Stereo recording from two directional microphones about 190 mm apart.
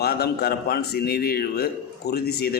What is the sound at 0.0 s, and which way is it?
A man's voice, 55° left (ahead or behind).